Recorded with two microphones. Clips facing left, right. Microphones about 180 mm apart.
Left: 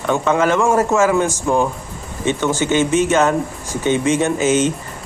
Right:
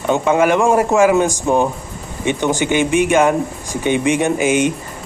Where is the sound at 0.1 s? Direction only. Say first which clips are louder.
Right 2 dB; 15° right (ahead or behind).